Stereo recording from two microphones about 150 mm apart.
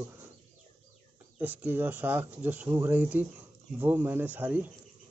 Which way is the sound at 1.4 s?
10° right (ahead or behind).